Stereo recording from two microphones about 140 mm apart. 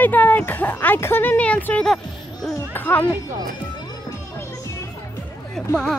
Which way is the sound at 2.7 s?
15° left (ahead or behind).